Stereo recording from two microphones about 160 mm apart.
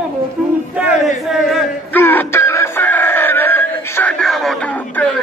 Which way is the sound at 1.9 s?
10° left (ahead or behind).